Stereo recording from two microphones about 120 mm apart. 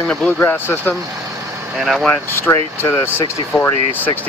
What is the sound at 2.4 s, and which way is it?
Speech, 20° left (ahead or behind).